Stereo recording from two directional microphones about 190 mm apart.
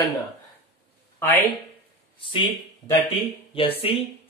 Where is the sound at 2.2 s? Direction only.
25° left (ahead or behind).